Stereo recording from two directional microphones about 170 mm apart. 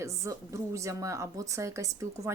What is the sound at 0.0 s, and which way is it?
Speech, 20° right (ahead or behind).